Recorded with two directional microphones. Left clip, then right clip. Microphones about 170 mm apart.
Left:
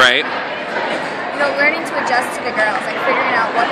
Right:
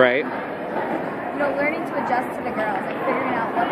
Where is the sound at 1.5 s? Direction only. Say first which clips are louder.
Left 7 dB; 15° left (ahead or behind).